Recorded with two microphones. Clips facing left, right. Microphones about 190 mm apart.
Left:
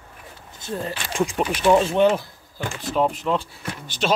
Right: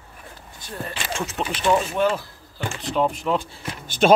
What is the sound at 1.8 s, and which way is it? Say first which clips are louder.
Speech: left 4 dB; 25° left (ahead or behind).